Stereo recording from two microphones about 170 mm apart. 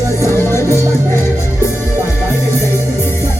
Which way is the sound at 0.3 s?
15° left (ahead or behind).